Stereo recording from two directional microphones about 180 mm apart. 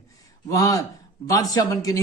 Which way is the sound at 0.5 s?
20° left (ahead or behind).